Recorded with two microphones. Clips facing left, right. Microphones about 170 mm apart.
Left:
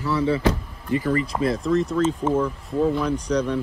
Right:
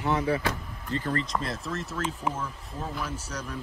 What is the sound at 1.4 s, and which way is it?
Speech, centre (ahead or behind).